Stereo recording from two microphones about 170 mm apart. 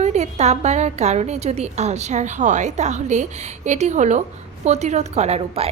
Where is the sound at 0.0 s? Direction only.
40° right (ahead or behind).